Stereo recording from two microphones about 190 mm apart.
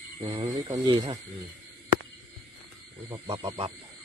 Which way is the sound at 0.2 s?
20° right (ahead or behind).